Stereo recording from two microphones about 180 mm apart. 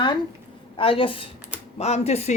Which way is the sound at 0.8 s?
30° left (ahead or behind).